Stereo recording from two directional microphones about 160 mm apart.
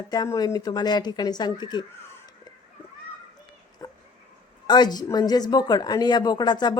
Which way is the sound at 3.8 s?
20° left (ahead or behind).